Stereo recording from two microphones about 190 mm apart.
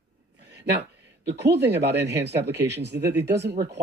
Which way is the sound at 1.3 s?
65° right (ahead or behind).